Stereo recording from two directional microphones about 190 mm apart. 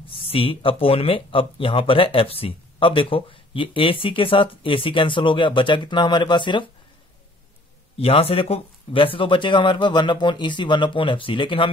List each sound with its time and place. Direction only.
0.0 s speech: 25° left (ahead or behind)
8.0 s speech: 30° left (ahead or behind)